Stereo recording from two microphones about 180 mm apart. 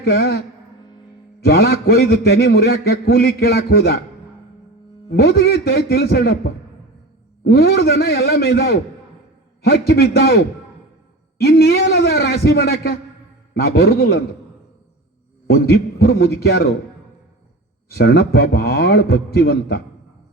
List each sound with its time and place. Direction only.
0.0 s a man's voice: 60° left (ahead or behind)
5.0 s a man's voice: 60° left (ahead or behind)
15.4 s a man's voice: 60° left (ahead or behind)
17.8 s a man's voice: 60° left (ahead or behind)